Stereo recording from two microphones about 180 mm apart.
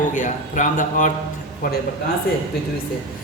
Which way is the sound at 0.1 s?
45° left (ahead or behind).